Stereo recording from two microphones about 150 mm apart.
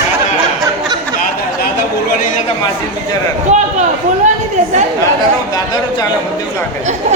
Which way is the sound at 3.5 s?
50° right (ahead or behind).